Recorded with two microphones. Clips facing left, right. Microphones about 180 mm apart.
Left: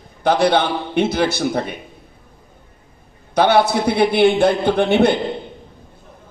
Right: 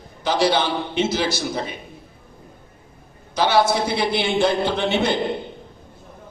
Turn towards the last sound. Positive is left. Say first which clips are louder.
# left 6 dB
turn(degrees=55)  # may be behind; listen again after turning